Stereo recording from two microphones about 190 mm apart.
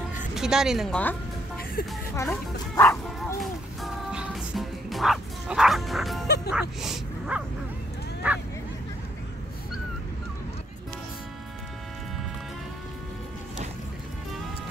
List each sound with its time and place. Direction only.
0.3 s a woman's voice: 5° right (ahead or behind)
2.1 s speech: 15° left (ahead or behind)
3.8 s music: 5° right (ahead or behind)
6.2 s music: 60° left (ahead or behind)
6.5 s speech: 5° right (ahead or behind)
8.2 s bow-wow: 5° right (ahead or behind)